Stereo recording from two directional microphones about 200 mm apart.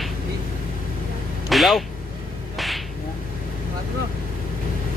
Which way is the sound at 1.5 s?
Centre (ahead or behind).